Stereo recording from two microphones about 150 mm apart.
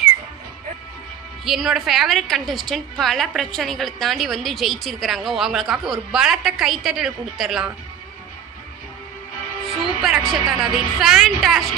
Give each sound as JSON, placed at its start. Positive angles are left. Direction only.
{"t": 1.5, "sound": "a woman's voice", "side_deg": 0}
{"t": 10.0, "sound": "a woman's voice", "side_deg": 0}